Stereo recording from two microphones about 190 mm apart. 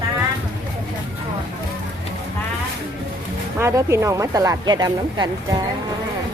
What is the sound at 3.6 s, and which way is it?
Speech, 15° right (ahead or behind).